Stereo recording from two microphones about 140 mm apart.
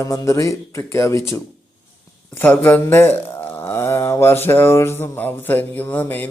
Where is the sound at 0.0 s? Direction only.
25° left (ahead or behind).